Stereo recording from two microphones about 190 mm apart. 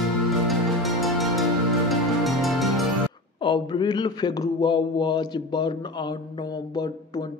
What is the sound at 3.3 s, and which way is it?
Speech, 25° left (ahead or behind).